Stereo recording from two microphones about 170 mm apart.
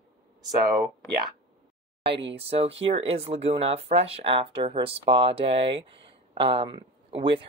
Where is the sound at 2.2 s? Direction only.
35° right (ahead or behind).